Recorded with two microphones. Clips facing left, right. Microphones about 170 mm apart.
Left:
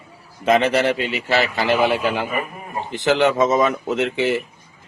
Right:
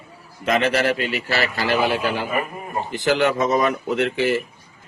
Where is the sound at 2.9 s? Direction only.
20° left (ahead or behind).